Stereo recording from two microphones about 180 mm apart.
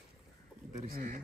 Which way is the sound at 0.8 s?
55° right (ahead or behind).